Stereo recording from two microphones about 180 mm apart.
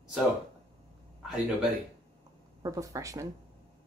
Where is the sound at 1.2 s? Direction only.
Centre (ahead or behind).